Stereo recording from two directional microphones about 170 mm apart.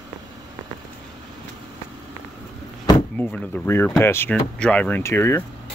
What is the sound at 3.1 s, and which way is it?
Speech, 10° left (ahead or behind).